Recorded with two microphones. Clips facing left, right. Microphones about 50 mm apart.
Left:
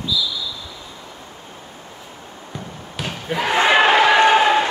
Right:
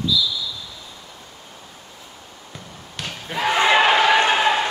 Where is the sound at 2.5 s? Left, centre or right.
Centre.